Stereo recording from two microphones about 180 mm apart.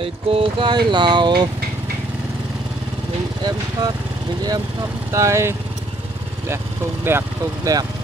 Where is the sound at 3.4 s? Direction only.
20° right (ahead or behind).